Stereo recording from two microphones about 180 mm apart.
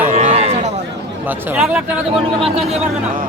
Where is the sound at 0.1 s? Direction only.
35° right (ahead or behind).